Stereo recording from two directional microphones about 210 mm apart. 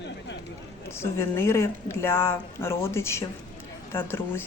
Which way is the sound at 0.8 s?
10° left (ahead or behind).